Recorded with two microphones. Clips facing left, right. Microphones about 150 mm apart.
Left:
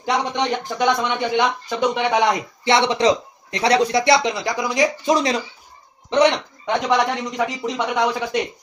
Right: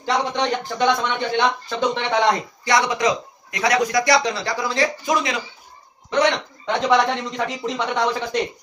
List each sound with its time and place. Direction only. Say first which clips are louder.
0.0 s speech: even; 15° left (ahead or behind)
2.6 s speech: left 3 dB; 25° left (ahead or behind)
5.0 s speech: left 4 dB; 35° left (ahead or behind)
6.6 s speech: right 1 dB; 15° left (ahead or behind)